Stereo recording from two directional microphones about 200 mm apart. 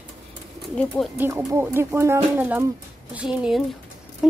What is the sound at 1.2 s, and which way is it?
Speech, 10° right (ahead or behind).